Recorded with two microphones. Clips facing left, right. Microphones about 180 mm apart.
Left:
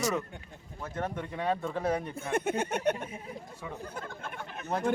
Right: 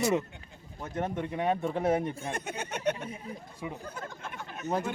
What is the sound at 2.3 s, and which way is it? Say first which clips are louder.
Speech: left 7 dB; 55° left (ahead or behind).